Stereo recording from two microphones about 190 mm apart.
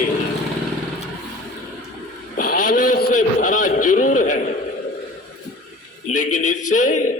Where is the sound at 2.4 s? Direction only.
45° left (ahead or behind).